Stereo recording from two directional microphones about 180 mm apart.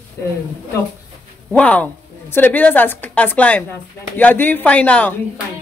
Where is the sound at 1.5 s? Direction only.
5° left (ahead or behind).